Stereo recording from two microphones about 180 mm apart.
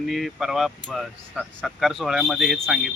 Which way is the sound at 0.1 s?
Centre (ahead or behind).